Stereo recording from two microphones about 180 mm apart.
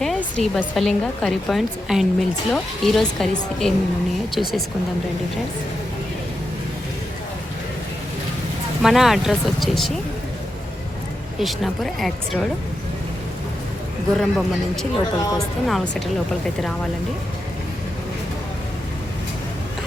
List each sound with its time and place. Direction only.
0.0 s speech: centre (ahead or behind)
8.8 s speech: centre (ahead or behind)
11.3 s speech: centre (ahead or behind)
14.2 s speech: centre (ahead or behind)
15.2 s speech: 20° left (ahead or behind)
15.6 s speech: centre (ahead or behind)